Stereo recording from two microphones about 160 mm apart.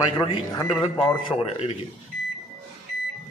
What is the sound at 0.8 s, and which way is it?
Speech, 35° left (ahead or behind).